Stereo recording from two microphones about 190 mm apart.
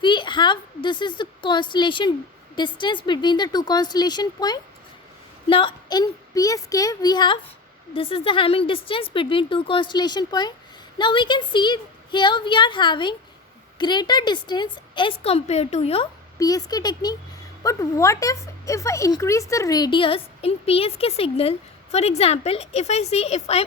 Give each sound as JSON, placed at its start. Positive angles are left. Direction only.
{"t": 0.0, "sound": "a woman's voice", "side_deg": 25}
{"t": 16.4, "sound": "a woman's voice", "side_deg": 20}